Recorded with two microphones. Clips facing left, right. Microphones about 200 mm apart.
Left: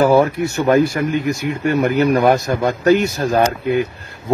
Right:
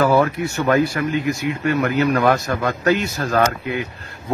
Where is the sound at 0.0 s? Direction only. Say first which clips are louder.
Left 3 dB; 20° left (ahead or behind).